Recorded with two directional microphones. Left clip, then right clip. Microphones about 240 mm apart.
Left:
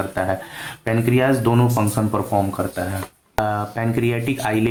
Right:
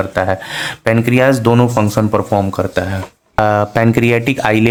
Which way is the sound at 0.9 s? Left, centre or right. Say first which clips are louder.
Right 6 dB; right.